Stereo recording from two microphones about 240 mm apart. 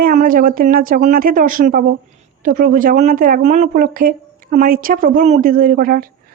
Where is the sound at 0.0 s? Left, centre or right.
Right.